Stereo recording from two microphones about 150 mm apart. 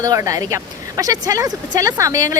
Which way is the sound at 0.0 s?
25° right (ahead or behind).